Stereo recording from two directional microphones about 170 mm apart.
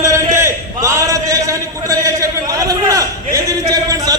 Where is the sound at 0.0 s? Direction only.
20° right (ahead or behind).